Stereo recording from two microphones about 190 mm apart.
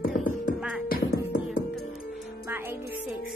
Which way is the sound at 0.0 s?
45° left (ahead or behind).